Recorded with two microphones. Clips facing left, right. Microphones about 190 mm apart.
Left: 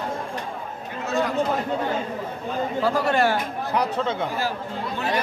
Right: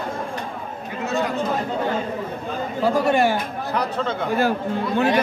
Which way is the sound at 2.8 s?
15° right (ahead or behind).